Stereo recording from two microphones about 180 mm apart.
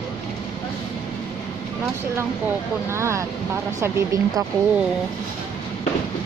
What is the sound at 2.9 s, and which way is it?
Speech, 15° right (ahead or behind).